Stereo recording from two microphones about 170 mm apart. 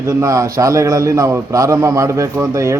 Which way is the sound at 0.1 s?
20° right (ahead or behind).